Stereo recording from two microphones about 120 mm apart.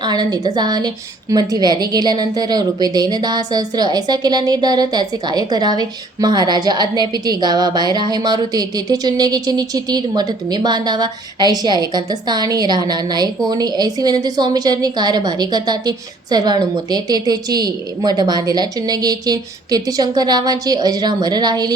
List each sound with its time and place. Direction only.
0.0 s a woman's voice: 35° right (ahead or behind)